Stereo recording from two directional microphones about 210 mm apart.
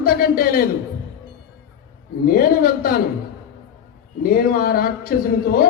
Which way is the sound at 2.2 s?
45° left (ahead or behind).